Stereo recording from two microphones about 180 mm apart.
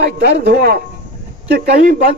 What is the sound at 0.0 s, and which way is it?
A man's voice, 60° right (ahead or behind).